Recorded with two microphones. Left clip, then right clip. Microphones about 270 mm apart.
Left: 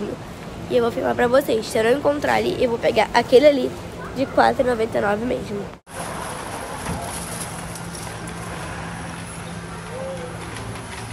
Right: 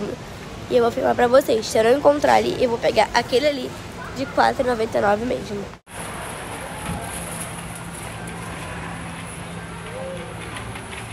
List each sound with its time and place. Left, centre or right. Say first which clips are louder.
0.7 s speech: right 2 dB; centre